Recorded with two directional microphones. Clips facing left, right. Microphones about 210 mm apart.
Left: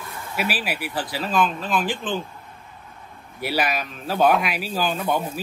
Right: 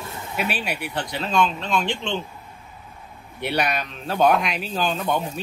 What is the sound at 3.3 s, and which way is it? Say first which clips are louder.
A man's voice: even; 5° left (ahead or behind).